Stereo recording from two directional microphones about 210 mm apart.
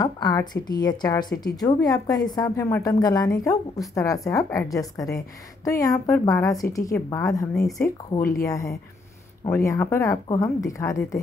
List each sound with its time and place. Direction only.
0.0 s a woman's voice: 20° left (ahead or behind)